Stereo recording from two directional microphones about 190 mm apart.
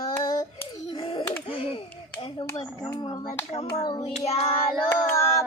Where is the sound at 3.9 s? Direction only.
25° left (ahead or behind).